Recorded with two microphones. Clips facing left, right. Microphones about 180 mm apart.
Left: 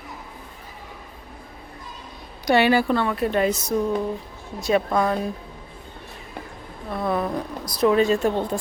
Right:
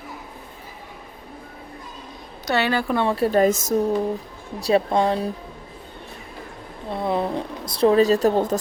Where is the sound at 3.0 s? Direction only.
30° right (ahead or behind).